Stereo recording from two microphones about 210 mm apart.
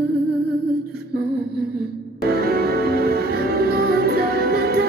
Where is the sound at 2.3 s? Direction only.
50° right (ahead or behind).